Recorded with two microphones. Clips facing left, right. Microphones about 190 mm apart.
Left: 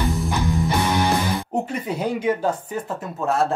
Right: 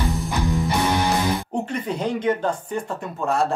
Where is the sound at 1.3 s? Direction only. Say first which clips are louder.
Left 1 dB; 10° left (ahead or behind).